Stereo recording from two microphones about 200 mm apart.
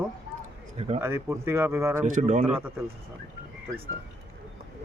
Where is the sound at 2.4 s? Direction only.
10° right (ahead or behind).